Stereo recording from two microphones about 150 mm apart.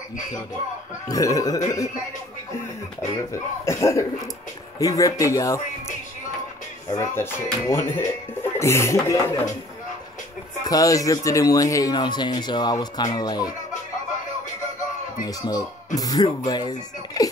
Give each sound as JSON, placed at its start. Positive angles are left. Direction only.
{"t": 1.0, "sound": "speech", "side_deg": 20}
{"t": 3.6, "sound": "speech", "side_deg": 20}
{"t": 6.9, "sound": "speech", "side_deg": 15}
{"t": 10.6, "sound": "speech", "side_deg": 25}
{"t": 15.2, "sound": "speech", "side_deg": 25}